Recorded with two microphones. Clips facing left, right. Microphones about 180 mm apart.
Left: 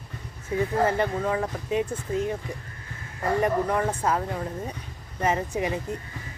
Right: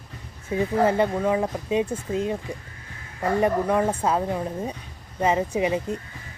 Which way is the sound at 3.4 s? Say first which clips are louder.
Right 4 dB; 15° right (ahead or behind).